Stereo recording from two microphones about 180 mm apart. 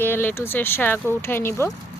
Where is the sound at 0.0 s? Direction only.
10° left (ahead or behind).